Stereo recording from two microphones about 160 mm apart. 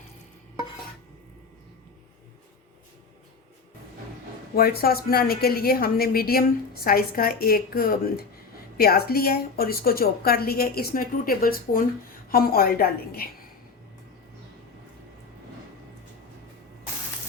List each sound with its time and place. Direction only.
4.5 s a woman's voice: 70° left (ahead or behind)